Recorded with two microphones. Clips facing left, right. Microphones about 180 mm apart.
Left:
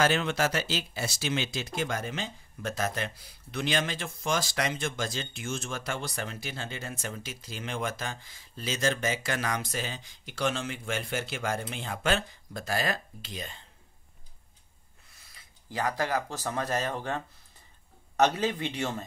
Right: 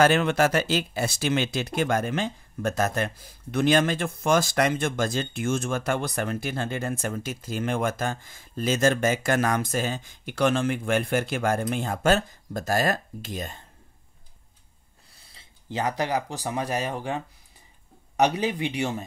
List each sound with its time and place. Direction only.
0.0 s speech: 55° right (ahead or behind)
15.1 s speech: 25° right (ahead or behind)